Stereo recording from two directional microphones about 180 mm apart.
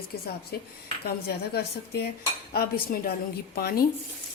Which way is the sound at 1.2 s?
65° left (ahead or behind).